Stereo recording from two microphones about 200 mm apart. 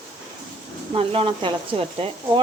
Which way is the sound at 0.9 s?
30° right (ahead or behind).